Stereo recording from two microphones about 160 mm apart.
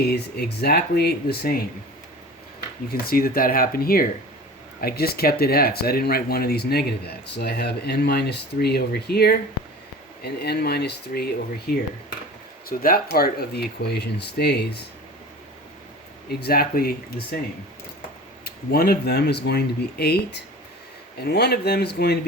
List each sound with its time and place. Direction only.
0.4 s speech: 90° left; by 1.6 s 75° left (ahead or behind)
2.9 s speech: 70° left (ahead or behind)
7.3 s speech: 90° left
12.6 s speech: 65° left (ahead or behind); by 14.5 s 90° left
16.3 s speech: 75° left (ahead or behind)
18.4 s speech: 70° left (ahead or behind); by 22.2 s 90° left